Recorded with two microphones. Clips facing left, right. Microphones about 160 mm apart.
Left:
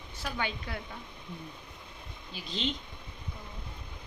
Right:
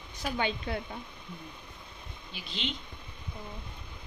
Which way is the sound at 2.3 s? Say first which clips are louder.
Left 3 dB; 40° left (ahead or behind).